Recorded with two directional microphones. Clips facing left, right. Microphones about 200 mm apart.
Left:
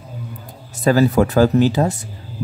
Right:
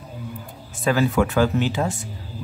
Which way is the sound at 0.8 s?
40° left (ahead or behind).